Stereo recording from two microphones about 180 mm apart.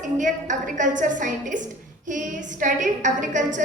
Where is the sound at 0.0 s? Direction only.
45° right (ahead or behind).